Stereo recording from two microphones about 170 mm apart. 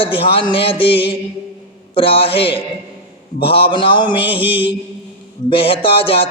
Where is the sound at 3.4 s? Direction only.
30° left (ahead or behind).